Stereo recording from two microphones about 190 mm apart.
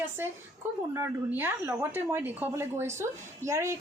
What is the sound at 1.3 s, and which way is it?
Speech, 10° right (ahead or behind).